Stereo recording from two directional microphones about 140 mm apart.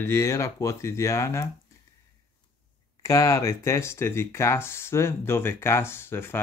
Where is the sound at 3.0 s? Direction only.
20° left (ahead or behind).